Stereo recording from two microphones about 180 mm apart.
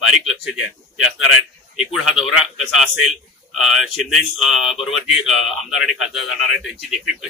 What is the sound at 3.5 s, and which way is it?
Speech, centre (ahead or behind).